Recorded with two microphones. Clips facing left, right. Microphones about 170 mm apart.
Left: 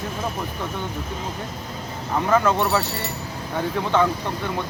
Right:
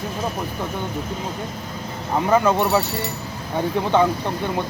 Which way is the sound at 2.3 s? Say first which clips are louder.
Right 2 dB; 15° right (ahead or behind).